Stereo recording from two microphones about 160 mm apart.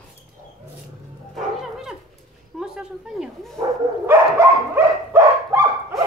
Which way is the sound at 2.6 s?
5° right (ahead or behind).